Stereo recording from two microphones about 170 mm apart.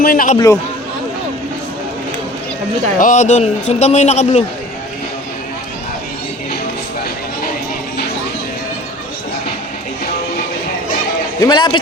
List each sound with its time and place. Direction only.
0.0 s a man's voice: 55° left (ahead or behind)
0.3 s a man's voice: 20° left (ahead or behind)
3.0 s speech: 45° left (ahead or behind)
11.3 s a man's voice: 25° left (ahead or behind)